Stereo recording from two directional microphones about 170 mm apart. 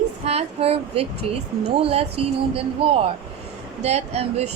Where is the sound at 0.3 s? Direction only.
35° right (ahead or behind).